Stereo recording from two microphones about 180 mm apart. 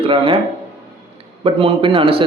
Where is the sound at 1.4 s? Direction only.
30° right (ahead or behind).